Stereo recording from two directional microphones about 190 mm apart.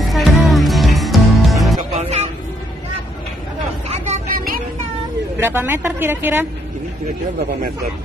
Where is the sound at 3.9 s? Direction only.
40° right (ahead or behind).